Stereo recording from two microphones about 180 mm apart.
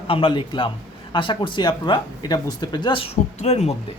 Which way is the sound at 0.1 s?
30° left (ahead or behind).